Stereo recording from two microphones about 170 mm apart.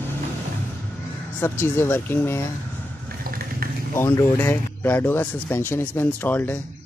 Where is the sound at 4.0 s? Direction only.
15° left (ahead or behind).